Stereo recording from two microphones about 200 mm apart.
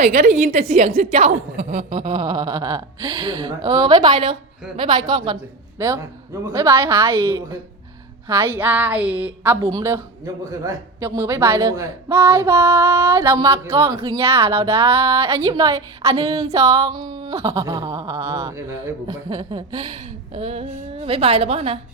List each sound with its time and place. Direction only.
0.0 s a woman's voice: 35° right (ahead or behind)
1.1 s a woman's voice: 35° right (ahead or behind); by 14.0 s 15° right (ahead or behind)
14.5 s a woman's voice: 30° right (ahead or behind)
15.4 s a man's voice: 15° right (ahead or behind)
16.1 s a woman's voice: 30° right (ahead or behind)
16.6 s a man's voice: 15° right (ahead or behind)
19.3 s a woman's voice: 25° right (ahead or behind)